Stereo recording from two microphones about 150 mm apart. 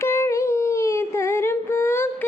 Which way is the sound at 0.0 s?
20° left (ahead or behind).